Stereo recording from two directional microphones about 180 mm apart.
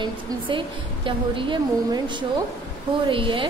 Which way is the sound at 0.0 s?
25° right (ahead or behind).